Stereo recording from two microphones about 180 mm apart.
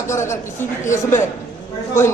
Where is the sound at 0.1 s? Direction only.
15° left (ahead or behind).